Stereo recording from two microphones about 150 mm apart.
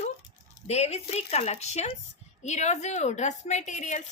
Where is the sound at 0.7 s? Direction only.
45° left (ahead or behind).